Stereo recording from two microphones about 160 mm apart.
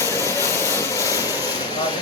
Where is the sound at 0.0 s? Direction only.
15° left (ahead or behind).